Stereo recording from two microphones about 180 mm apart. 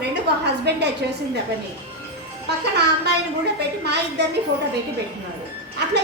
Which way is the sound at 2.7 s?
70° right (ahead or behind).